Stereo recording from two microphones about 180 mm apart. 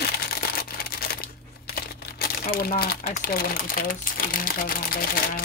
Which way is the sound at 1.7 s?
60° left (ahead or behind).